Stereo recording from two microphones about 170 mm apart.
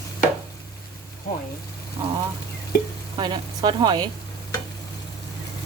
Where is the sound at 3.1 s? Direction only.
25° right (ahead or behind).